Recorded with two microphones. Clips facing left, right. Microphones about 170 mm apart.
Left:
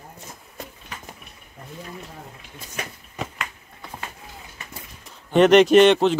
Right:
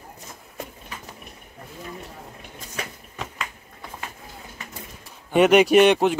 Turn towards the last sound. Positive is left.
turn(degrees=-10)  # may be behind; listen again after turning